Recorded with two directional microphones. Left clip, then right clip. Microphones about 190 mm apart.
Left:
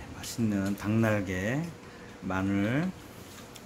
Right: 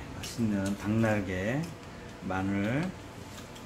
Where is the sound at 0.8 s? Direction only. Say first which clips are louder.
Left 1 dB; 40° left (ahead or behind).